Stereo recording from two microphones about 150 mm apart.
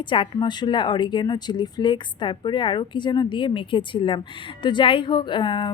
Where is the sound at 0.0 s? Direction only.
35° left (ahead or behind).